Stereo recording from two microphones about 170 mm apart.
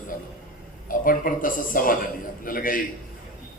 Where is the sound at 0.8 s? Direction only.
55° left (ahead or behind).